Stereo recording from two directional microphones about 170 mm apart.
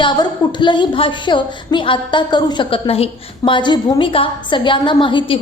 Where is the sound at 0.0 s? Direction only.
25° left (ahead or behind).